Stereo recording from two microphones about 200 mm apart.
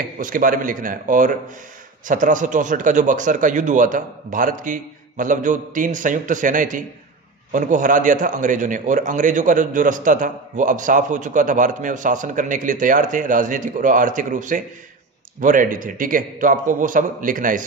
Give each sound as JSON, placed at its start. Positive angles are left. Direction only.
{"t": 0.2, "sound": "a man's voice", "side_deg": -45}